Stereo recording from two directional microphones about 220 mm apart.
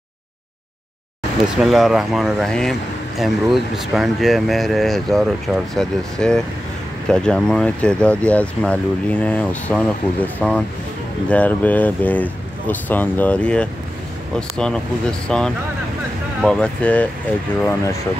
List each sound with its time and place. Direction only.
1.6 s speech: centre (ahead or behind)